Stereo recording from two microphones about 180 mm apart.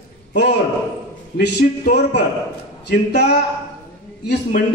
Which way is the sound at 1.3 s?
65° left (ahead or behind).